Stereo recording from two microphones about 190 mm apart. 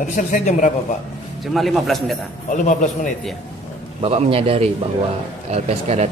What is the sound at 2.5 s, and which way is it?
Speech, 40° left (ahead or behind).